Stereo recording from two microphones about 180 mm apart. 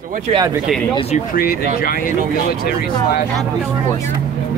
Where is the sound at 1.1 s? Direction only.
55° left (ahead or behind).